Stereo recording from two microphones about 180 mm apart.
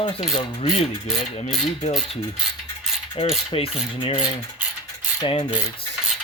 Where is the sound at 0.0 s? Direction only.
30° left (ahead or behind).